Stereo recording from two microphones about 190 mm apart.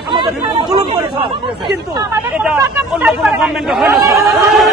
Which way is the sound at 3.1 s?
5° right (ahead or behind).